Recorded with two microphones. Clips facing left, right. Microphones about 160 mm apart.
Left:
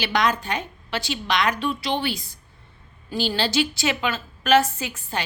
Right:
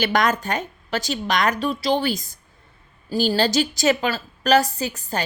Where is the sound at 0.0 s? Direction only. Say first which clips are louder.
Right 2 dB; 50° right (ahead or behind).